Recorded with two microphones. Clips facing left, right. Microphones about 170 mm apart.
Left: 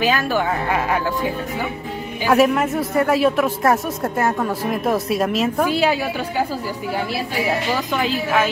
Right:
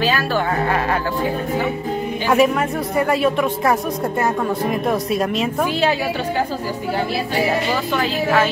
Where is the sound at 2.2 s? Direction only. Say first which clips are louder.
Left 1 dB; centre (ahead or behind).